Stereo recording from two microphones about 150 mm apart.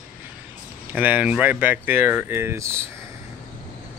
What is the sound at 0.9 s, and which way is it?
Speech, 10° right (ahead or behind).